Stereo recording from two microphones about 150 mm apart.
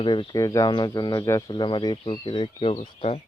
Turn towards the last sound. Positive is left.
turn(degrees=40)  # may be behind; listen again after turning